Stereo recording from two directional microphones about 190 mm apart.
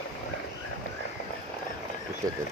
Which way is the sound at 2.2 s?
20° right (ahead or behind).